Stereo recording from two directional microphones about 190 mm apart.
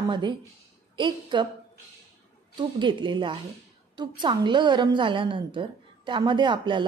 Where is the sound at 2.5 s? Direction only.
25° right (ahead or behind).